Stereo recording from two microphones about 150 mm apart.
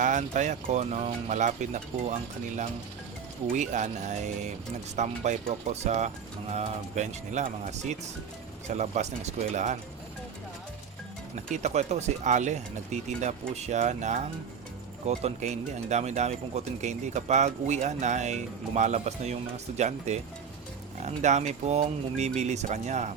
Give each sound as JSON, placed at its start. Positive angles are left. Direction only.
{"t": 0.0, "sound": "speech", "side_deg": -55}
{"t": 3.5, "sound": "speech", "side_deg": -55}
{"t": 11.5, "sound": "speech", "side_deg": -50}